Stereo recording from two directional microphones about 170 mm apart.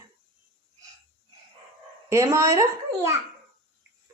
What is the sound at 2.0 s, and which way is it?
Speech, 15° right (ahead or behind).